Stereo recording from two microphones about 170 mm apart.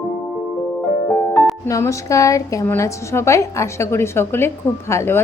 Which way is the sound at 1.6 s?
20° left (ahead or behind).